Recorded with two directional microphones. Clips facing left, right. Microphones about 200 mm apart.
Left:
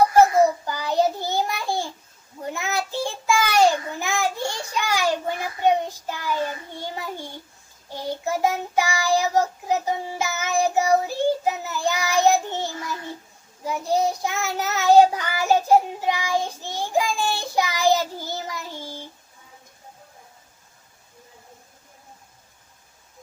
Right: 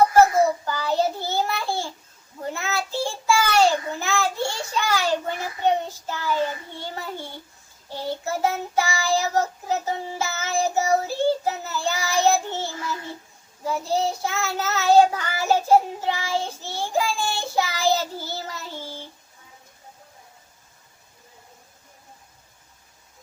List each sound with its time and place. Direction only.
0.6 s child singing: 15° left (ahead or behind)